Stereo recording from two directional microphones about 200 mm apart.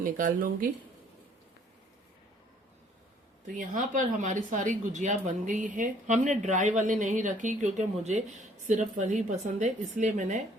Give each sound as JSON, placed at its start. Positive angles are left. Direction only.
{"t": 0.0, "sound": "speech", "side_deg": -40}
{"t": 3.4, "sound": "speech", "side_deg": -40}